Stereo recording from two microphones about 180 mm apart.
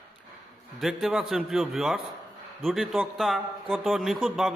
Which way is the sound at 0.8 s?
Centre (ahead or behind).